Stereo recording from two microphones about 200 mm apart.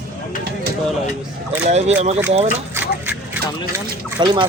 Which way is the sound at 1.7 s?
35° right (ahead or behind).